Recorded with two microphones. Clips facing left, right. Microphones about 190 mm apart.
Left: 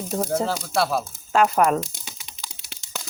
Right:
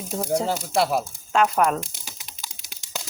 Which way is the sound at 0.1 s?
10° right (ahead or behind).